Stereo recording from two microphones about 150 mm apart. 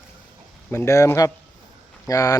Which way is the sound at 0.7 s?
20° left (ahead or behind).